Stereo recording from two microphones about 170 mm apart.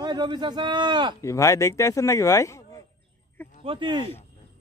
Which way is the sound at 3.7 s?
30° right (ahead or behind).